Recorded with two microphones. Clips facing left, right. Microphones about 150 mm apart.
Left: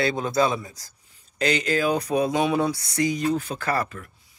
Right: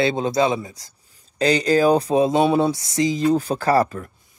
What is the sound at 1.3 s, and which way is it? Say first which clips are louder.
Speech: right 6 dB; 35° right (ahead or behind).